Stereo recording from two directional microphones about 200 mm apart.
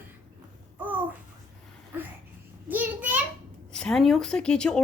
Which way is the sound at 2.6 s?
10° right (ahead or behind).